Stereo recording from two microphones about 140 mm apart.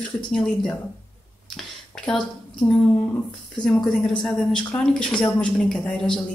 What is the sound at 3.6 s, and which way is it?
Speech, 5° left (ahead or behind).